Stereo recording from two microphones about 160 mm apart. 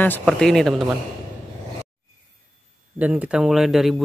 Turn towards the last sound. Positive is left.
turn(degrees=0)  # may be behind; listen again after turning